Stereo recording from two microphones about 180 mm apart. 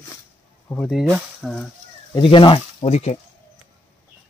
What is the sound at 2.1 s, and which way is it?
Speech, 25° left (ahead or behind).